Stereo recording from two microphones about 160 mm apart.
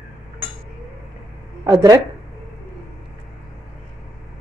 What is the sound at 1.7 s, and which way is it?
Speech, 20° right (ahead or behind).